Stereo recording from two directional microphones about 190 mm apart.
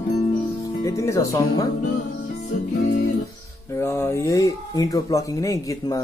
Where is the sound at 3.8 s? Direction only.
15° left (ahead or behind).